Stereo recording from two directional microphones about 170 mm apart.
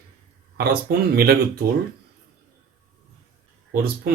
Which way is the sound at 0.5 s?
65° right (ahead or behind).